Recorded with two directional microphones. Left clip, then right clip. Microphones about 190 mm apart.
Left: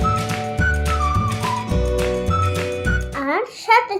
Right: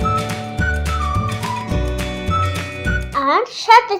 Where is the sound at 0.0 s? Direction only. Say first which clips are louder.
Right 1 dB; centre (ahead or behind).